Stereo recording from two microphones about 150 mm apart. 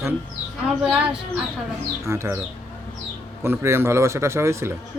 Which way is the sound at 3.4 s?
15° right (ahead or behind).